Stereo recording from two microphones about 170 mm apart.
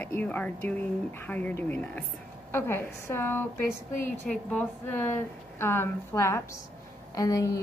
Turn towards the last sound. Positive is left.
turn(degrees=20)  # may be behind; listen again after turning